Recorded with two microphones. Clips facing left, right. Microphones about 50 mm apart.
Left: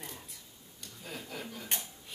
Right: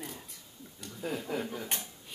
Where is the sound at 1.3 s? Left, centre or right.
Right.